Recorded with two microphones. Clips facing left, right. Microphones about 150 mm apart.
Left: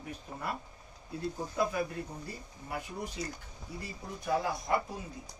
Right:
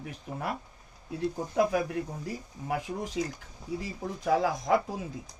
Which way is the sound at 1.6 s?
90° right.